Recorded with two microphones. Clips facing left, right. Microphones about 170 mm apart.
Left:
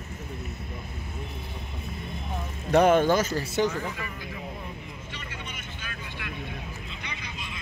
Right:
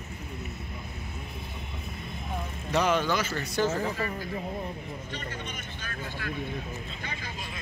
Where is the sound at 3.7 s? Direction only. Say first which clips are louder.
Right 4 dB; 40° right (ahead or behind).